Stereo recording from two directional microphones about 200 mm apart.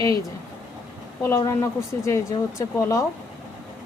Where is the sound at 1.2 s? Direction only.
15° left (ahead or behind).